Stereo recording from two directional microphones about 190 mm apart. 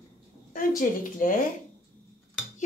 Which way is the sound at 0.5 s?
45° left (ahead or behind).